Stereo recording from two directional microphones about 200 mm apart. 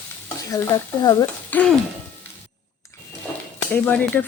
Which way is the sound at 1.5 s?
10° left (ahead or behind).